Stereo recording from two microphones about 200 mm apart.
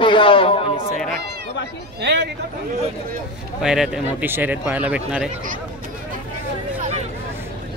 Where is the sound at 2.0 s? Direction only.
55° right (ahead or behind).